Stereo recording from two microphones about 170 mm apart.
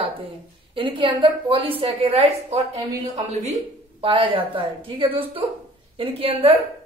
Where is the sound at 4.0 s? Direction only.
30° right (ahead or behind).